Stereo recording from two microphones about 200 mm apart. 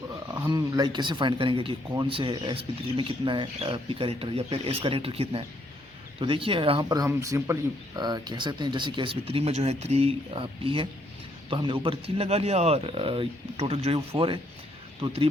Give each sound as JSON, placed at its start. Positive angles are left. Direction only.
{"t": 0.1, "sound": "speech", "side_deg": -15}